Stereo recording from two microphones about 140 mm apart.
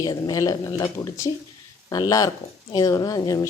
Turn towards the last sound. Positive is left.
turn(degrees=25)  # may be behind; listen again after turning